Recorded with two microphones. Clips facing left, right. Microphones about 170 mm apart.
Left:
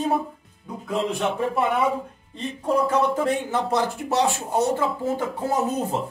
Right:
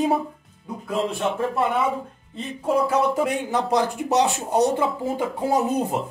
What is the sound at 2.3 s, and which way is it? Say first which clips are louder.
Speech: right 1 dB; 5° right (ahead or behind).